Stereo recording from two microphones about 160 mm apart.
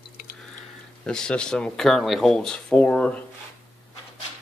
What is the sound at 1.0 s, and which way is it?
Speech, 5° left (ahead or behind).